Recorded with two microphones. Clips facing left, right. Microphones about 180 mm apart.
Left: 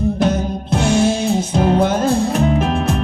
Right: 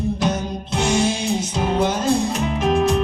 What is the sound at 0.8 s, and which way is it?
Music, 55° left (ahead or behind).